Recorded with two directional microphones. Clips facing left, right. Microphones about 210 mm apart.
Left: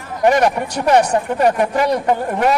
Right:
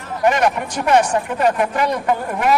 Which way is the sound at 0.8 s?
35° left (ahead or behind).